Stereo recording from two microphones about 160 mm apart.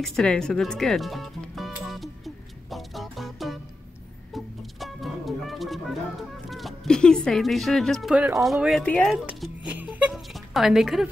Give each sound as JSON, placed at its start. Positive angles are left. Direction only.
{"t": 0.0, "sound": "music", "side_deg": 0}
{"t": 6.5, "sound": "speech", "side_deg": 0}
{"t": 9.1, "sound": "music", "side_deg": -5}